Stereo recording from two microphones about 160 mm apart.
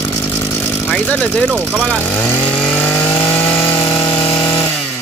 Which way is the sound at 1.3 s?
5° left (ahead or behind).